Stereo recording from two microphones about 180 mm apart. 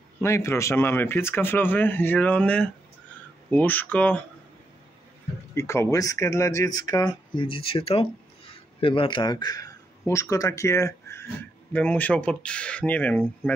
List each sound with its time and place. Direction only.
0.2 s speech: 15° left (ahead or behind)
5.5 s speech: 15° left (ahead or behind)